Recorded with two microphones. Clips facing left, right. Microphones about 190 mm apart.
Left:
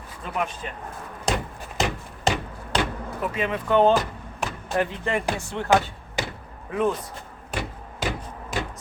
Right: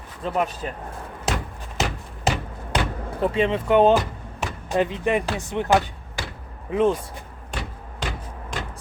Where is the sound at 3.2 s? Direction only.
30° right (ahead or behind).